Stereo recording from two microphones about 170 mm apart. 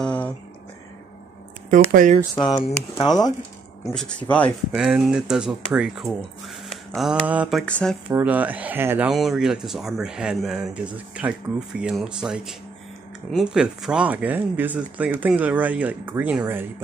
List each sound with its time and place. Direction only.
0.0 s a sound: 10° left (ahead or behind)
1.9 s speech: 55° right (ahead or behind)
2.3 s speech: 25° left (ahead or behind)
3.8 s speech: centre (ahead or behind)
4.7 s speech: 5° right (ahead or behind)
8.2 s speech: 10° right (ahead or behind)